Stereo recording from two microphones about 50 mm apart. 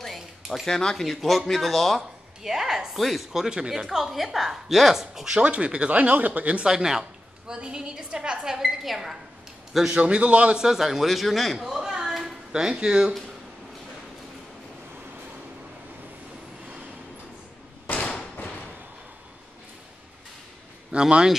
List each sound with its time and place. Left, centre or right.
0.5 s speech: centre
2.4 s a woman's voice: centre
3.4 s a woman's voice: centre
5.4 s speech: right
6.7 s a woman's voice: centre
8.5 s a woman's voice: centre
9.9 s speech: right
10.6 s a man's voice: centre
20.9 s a woman's voice: centre